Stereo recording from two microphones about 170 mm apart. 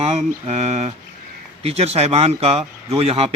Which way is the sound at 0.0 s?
40° right (ahead or behind).